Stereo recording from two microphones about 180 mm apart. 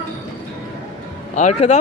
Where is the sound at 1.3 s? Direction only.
40° left (ahead or behind).